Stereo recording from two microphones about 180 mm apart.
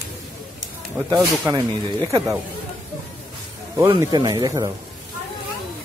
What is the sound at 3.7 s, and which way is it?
Speech, 15° right (ahead or behind).